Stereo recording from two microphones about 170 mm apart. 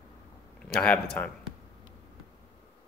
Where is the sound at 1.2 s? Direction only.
10° left (ahead or behind).